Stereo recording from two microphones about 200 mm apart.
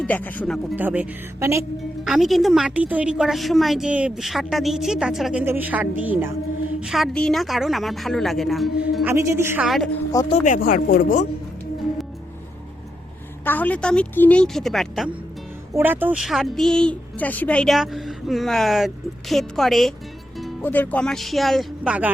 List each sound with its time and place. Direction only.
0.0 s speech: 10° left (ahead or behind)
0.8 s speech: 10° right (ahead or behind)
2.0 s a woman's voice: centre (ahead or behind)
9.6 s a woman's voice: centre (ahead or behind)
10.2 s speech: 35° left (ahead or behind)
13.4 s a woman's voice: 10° left (ahead or behind)
15.7 s a woman's voice: 10° right (ahead or behind)